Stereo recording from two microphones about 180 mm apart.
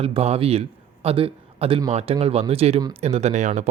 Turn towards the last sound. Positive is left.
turn(degrees=-40)  # may be behind; listen again after turning